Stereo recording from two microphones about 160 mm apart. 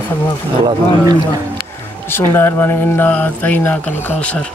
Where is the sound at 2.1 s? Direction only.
15° left (ahead or behind).